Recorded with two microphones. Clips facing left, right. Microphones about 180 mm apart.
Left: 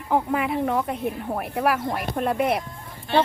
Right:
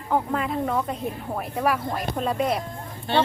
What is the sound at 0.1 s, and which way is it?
Speech, 10° left (ahead or behind).